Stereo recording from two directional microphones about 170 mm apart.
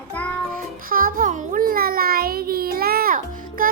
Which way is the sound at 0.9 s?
55° right (ahead or behind).